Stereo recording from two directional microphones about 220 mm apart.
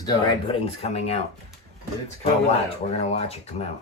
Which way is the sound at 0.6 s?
30° left (ahead or behind).